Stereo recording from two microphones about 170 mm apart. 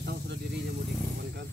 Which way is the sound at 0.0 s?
75° right (ahead or behind).